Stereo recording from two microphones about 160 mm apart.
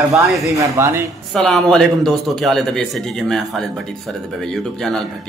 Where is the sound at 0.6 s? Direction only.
20° right (ahead or behind).